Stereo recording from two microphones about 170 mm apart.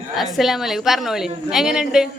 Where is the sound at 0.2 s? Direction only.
Centre (ahead or behind).